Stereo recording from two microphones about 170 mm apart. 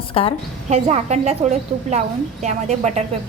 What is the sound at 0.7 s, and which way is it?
A woman's voice, 40° right (ahead or behind).